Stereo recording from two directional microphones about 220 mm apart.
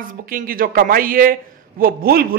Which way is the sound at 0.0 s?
40° right (ahead or behind).